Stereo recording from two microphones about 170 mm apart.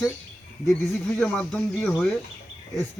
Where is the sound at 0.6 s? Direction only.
10° left (ahead or behind).